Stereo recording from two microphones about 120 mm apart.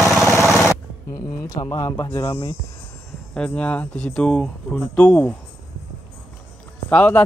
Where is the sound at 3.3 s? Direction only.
10° left (ahead or behind).